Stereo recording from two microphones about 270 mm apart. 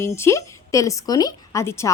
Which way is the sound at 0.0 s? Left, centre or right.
Centre.